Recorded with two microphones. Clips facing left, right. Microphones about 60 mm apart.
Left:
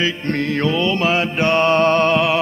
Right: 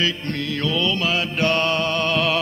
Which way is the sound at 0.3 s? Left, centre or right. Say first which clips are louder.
Left 5 dB; left.